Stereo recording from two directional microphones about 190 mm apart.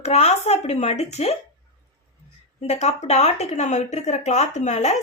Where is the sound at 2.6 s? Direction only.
35° left (ahead or behind).